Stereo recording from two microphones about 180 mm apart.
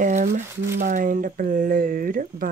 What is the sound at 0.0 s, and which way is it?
Crumpling, 45° right (ahead or behind).